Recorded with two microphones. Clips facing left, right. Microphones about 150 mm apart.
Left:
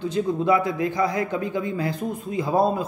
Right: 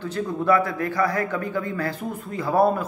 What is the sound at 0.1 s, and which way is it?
A man's voice, 15° left (ahead or behind).